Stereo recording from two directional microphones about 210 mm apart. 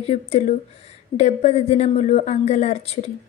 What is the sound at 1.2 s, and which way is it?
Speech, 30° left (ahead or behind).